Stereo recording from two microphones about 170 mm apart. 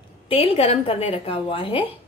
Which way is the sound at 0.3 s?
35° left (ahead or behind).